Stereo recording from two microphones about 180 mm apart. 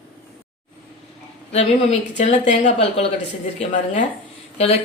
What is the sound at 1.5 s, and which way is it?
Speech, 40° left (ahead or behind).